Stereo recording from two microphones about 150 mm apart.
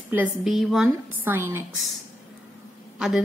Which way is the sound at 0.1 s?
10° right (ahead or behind).